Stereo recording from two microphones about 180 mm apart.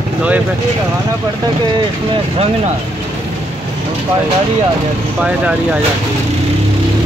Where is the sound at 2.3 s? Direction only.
35° right (ahead or behind).